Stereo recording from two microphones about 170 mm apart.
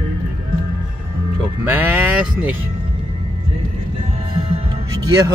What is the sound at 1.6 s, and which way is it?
Music, 10° right (ahead or behind).